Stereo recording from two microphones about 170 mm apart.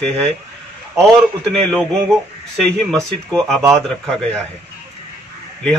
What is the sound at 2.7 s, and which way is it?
A man's voice, centre (ahead or behind).